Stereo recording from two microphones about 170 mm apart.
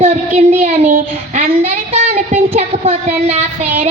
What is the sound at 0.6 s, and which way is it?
A child's voice, 50° right (ahead or behind).